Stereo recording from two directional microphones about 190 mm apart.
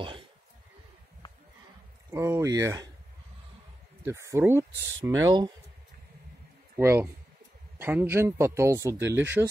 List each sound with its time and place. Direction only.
2.0 s speech: 15° right (ahead or behind)
4.0 s speech: 15° right (ahead or behind)
6.8 s speech: 15° right (ahead or behind)